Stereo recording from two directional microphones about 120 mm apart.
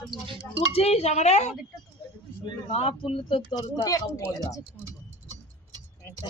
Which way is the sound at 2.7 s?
50° left (ahead or behind).